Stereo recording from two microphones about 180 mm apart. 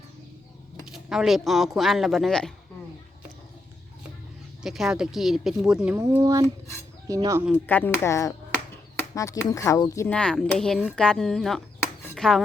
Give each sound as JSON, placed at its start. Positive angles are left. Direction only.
{"t": 1.1, "sound": "speech", "side_deg": 0}
{"t": 4.6, "sound": "speech", "side_deg": 0}
{"t": 7.5, "sound": "speech", "side_deg": 10}
{"t": 10.1, "sound": "speech", "side_deg": 5}
{"t": 12.1, "sound": "dishes", "side_deg": 5}